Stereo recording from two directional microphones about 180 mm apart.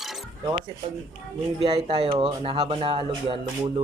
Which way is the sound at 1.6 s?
35° right (ahead or behind).